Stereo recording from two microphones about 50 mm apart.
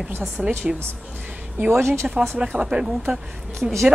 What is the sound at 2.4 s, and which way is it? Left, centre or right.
Speech, centre.